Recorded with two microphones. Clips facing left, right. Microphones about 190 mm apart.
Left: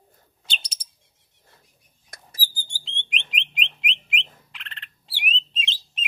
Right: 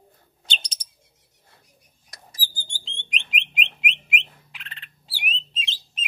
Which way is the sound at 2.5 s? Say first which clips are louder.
Right 1 dB; 10° left (ahead or behind).